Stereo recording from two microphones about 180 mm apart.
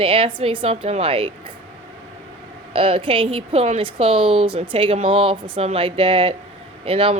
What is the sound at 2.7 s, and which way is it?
Speech, 30° right (ahead or behind).